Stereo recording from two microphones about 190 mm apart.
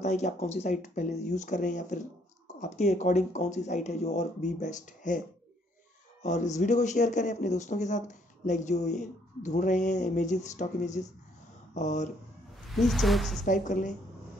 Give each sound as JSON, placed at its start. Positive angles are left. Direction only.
{"t": 0.0, "sound": "speech", "side_deg": 40}
{"t": 6.2, "sound": "speech", "side_deg": 40}
{"t": 12.7, "sound": "speech", "side_deg": 0}
{"t": 13.5, "sound": "a woman's voice", "side_deg": 40}